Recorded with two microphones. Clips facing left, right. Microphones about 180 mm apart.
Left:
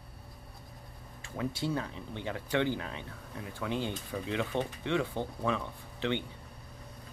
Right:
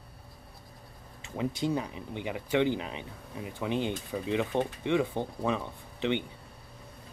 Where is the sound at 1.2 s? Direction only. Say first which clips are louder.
Right 3 dB; 20° right (ahead or behind).